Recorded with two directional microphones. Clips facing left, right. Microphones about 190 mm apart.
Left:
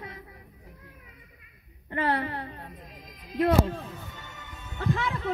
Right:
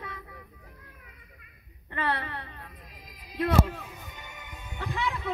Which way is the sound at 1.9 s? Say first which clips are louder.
Left 4 dB; 45° left (ahead or behind).